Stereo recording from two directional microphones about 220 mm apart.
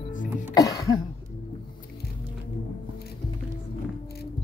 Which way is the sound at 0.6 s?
15° left (ahead or behind).